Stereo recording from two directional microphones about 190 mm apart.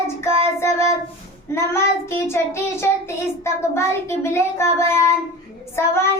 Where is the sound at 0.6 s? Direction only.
15° left (ahead or behind).